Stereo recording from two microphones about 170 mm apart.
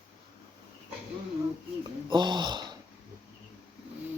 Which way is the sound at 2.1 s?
25° right (ahead or behind).